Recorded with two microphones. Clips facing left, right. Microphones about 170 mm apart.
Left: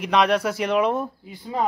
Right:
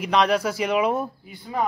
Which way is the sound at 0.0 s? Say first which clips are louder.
Left 1 dB; centre (ahead or behind).